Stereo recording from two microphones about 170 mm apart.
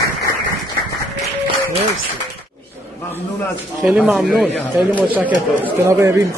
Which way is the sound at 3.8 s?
5° right (ahead or behind).